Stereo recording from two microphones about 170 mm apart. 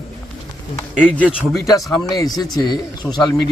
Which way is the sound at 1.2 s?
5° right (ahead or behind).